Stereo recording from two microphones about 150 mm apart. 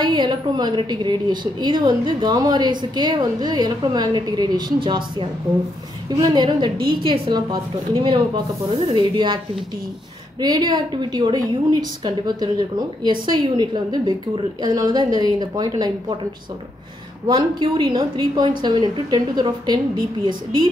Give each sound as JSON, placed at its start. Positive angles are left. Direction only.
{"t": 0.0, "sound": "a woman's voice", "side_deg": -30}
{"t": 10.4, "sound": "a woman's voice", "side_deg": -25}
{"t": 17.3, "sound": "a woman's voice", "side_deg": -30}